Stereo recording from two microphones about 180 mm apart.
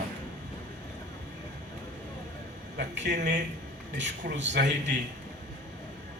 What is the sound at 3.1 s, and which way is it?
Speech, 60° right (ahead or behind).